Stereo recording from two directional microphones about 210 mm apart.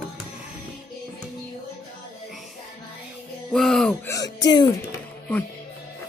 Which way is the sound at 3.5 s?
Centre (ahead or behind).